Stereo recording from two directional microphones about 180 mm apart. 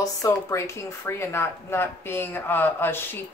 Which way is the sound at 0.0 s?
20° left (ahead or behind).